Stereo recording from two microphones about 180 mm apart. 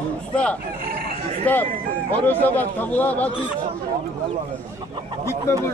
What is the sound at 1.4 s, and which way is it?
A man's voice, 10° left (ahead or behind).